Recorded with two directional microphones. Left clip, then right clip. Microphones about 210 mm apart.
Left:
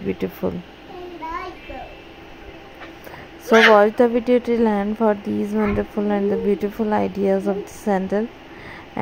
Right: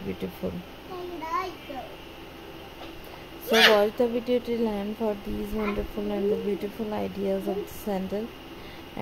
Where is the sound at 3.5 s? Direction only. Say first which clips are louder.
Left 7 dB; 25° left (ahead or behind).